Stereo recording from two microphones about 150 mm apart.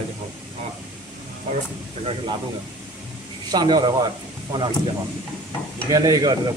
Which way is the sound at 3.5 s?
30° right (ahead or behind).